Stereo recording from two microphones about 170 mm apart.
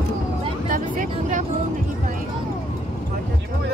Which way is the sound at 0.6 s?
50° right (ahead or behind).